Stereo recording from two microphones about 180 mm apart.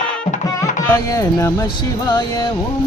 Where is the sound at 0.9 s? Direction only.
15° left (ahead or behind).